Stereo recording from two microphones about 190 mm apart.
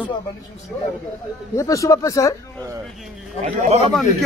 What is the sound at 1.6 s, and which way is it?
Speech, 15° left (ahead or behind).